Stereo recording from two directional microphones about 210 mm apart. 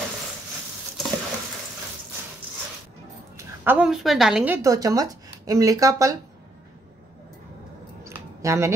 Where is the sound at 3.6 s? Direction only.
5° right (ahead or behind).